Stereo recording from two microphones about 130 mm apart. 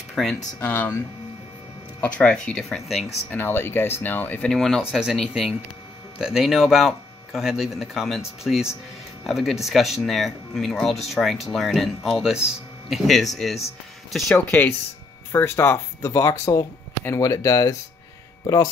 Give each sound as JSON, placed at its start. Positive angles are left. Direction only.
{"t": 0.1, "sound": "speech", "side_deg": 0}
{"t": 0.6, "sound": "speech", "side_deg": 15}
{"t": 2.0, "sound": "speech", "side_deg": 10}
{"t": 3.3, "sound": "speech", "side_deg": 15}
{"t": 14.3, "sound": "speech", "side_deg": 10}